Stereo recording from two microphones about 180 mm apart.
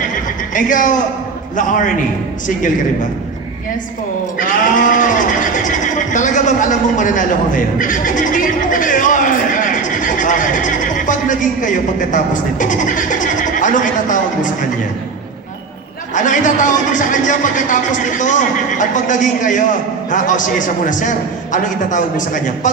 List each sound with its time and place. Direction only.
0.1 s neigh: 45° left (ahead or behind)
1.5 s speech: 45° left (ahead or behind)
4.4 s speech: 45° left (ahead or behind)
16.1 s speech: 45° left (ahead or behind)